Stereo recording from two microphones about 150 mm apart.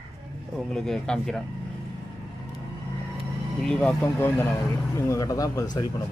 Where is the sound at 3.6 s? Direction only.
5° left (ahead or behind); by 5.8 s 25° left (ahead or behind).